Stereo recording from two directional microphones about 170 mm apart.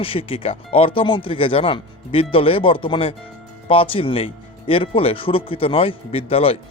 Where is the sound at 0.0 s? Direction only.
35° left (ahead or behind).